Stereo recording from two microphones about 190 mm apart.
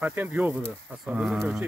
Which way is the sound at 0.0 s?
10° right (ahead or behind).